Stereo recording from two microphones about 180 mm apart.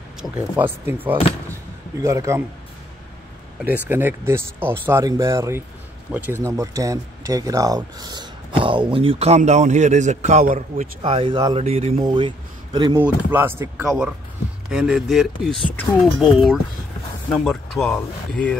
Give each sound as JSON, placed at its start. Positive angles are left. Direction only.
{"t": 0.4, "sound": "speech", "side_deg": -10}
{"t": 1.5, "sound": "a sound", "side_deg": -15}
{"t": 3.6, "sound": "speech", "side_deg": -10}
{"t": 10.4, "sound": "a man's voice", "side_deg": -50}
{"t": 11.0, "sound": "speech", "side_deg": -30}
{"t": 12.9, "sound": "speech", "side_deg": -10}